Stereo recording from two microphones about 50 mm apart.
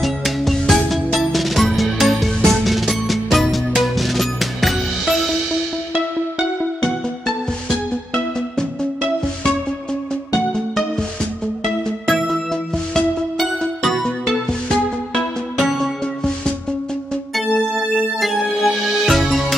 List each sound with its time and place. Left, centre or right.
0.0 s music: centre
10.3 s music: centre
18.2 s music: centre